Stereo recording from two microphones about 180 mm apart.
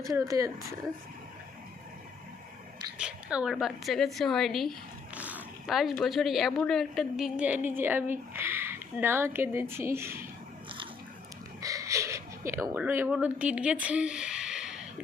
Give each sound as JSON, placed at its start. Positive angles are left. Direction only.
{"t": 0.2, "sound": "speech", "side_deg": -20}
{"t": 3.0, "sound": "a woman's voice", "side_deg": -5}
{"t": 5.1, "sound": "zipper", "side_deg": -10}
{"t": 6.0, "sound": "a woman's voice", "side_deg": 0}
{"t": 11.6, "sound": "a sound", "side_deg": -20}